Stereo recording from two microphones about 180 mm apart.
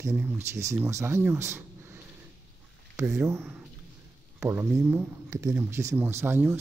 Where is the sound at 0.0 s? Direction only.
10° right (ahead or behind).